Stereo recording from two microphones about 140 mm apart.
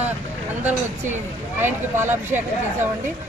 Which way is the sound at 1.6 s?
15° right (ahead or behind).